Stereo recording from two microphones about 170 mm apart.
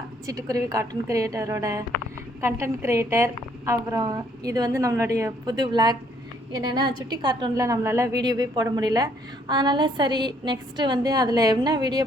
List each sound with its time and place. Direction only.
0.3 s a woman's voice: 20° right (ahead or behind)